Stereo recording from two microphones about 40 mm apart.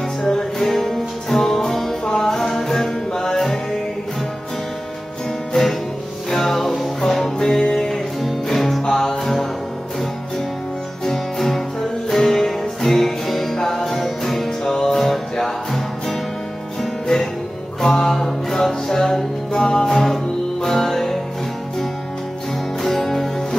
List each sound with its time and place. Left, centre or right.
0.2 s music: centre
5.5 s music: centre
8.5 s music: centre
11.1 s music: centre
22.8 s music: centre